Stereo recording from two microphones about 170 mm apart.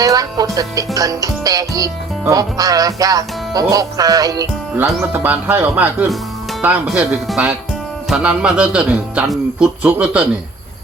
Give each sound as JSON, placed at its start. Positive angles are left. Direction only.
{"t": 0.0, "sound": "speech", "side_deg": -20}
{"t": 4.9, "sound": "speech", "side_deg": -10}